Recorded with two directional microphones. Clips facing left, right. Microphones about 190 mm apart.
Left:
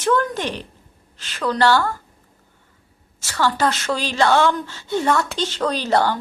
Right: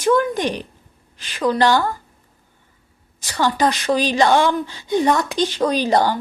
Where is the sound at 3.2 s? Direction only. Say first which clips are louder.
Right 1 dB; 15° right (ahead or behind).